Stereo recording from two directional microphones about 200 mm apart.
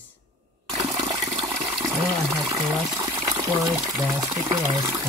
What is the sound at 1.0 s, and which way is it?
Water, 20° right (ahead or behind).